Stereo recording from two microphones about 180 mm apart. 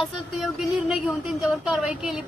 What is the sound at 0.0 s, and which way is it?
Speech, centre (ahead or behind).